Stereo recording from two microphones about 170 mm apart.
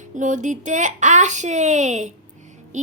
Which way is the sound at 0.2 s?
45° right (ahead or behind).